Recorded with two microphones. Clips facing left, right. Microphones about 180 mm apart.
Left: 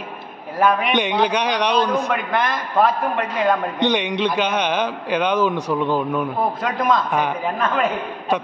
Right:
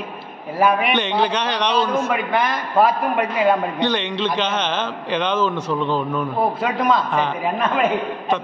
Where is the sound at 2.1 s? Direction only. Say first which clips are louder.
Right 1 dB; 5° right (ahead or behind).